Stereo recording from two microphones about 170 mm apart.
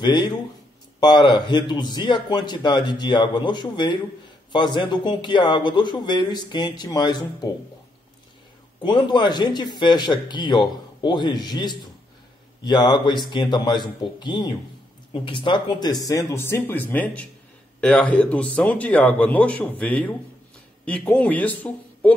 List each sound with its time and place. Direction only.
0.0 s speech: 25° left (ahead or behind)
8.8 s a man's voice: 25° left (ahead or behind); by 22.1 s 10° left (ahead or behind)